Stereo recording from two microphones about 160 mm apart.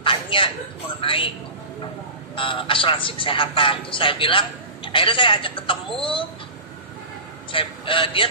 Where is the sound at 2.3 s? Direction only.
35° left (ahead or behind).